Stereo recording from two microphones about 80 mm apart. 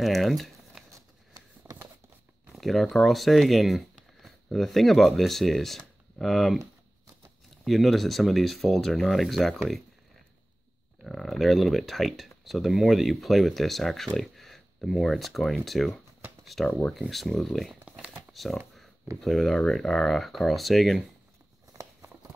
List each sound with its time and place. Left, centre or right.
0.0 s speech: centre
1.6 s a sound: right
2.5 s speech: centre
7.6 s speech: centre
11.1 s speech: centre
18.3 s a sound: centre
19.2 s speech: centre